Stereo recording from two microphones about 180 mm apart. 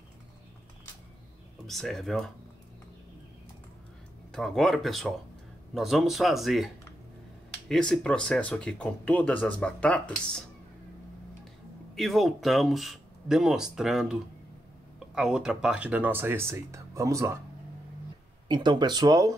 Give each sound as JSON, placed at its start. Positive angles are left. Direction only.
{"t": 1.7, "sound": "speech", "side_deg": 0}
{"t": 4.3, "sound": "speech", "side_deg": 0}
{"t": 11.9, "sound": "speech", "side_deg": 0}
{"t": 15.1, "sound": "speech", "side_deg": -5}
{"t": 18.5, "sound": "speech", "side_deg": -25}